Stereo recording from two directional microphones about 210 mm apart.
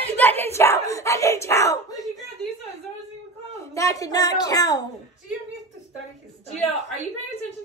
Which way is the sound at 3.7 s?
15° left (ahead or behind).